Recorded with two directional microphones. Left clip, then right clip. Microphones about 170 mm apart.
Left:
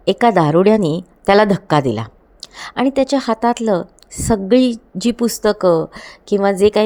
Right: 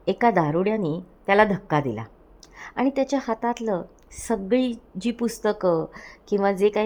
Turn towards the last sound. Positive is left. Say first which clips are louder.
# left 7 dB
turn(degrees=25)  # may be behind; listen again after turning